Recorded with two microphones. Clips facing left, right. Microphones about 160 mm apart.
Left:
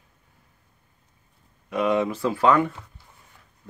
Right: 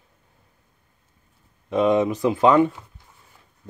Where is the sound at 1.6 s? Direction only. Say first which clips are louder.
Right 4 dB; 20° right (ahead or behind).